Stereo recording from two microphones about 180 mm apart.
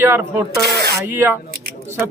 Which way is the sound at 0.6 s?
65° right (ahead or behind).